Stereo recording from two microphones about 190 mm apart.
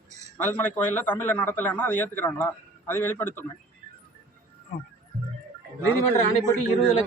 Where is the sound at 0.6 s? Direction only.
10° left (ahead or behind).